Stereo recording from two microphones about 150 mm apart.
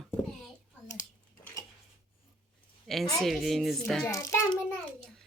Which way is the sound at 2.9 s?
Centre (ahead or behind).